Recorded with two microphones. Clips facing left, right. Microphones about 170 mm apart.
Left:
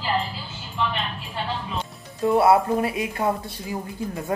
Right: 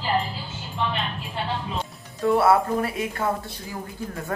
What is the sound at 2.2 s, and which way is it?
Speech, 20° left (ahead or behind).